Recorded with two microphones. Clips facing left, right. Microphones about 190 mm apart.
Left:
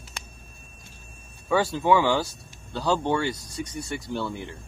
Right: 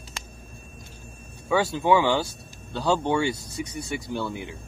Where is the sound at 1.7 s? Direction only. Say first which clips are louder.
Right 1 dB; 15° right (ahead or behind).